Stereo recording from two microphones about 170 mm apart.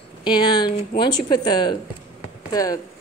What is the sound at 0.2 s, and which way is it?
A woman's voice, 25° left (ahead or behind).